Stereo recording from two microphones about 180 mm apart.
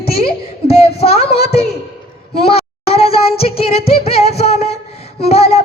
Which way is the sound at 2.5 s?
35° left (ahead or behind).